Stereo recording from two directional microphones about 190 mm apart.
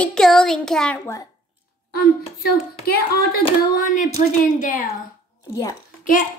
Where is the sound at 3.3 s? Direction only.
45° left (ahead or behind).